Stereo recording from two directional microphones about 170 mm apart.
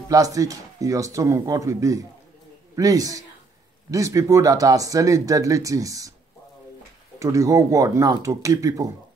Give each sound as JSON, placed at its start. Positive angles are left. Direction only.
{"t": 0.1, "sound": "speech", "side_deg": -20}
{"t": 7.2, "sound": "speech", "side_deg": -20}